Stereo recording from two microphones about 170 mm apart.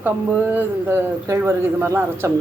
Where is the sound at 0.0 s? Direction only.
10° right (ahead or behind).